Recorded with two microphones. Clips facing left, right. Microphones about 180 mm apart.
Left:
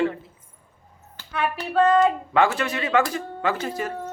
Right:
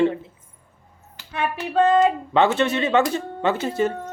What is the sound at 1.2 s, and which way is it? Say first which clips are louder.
Speech: even; 20° right (ahead or behind).